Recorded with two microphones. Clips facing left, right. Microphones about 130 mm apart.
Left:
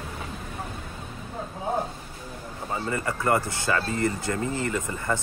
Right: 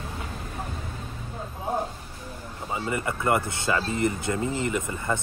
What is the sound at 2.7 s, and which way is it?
Speech, 20° right (ahead or behind).